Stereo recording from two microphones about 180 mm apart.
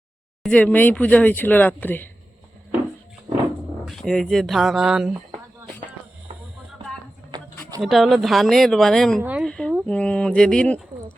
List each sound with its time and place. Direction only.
0.4 s speech: 5° left (ahead or behind)
3.8 s speech: 5° left (ahead or behind)
7.3 s a sound: 25° right (ahead or behind)
7.8 s speech: centre (ahead or behind)
9.4 s a sound: 5° left (ahead or behind)
9.8 s speech: 5° left (ahead or behind)